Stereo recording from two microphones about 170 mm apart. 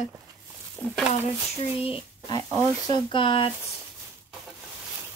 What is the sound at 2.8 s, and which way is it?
Speech, 25° left (ahead or behind).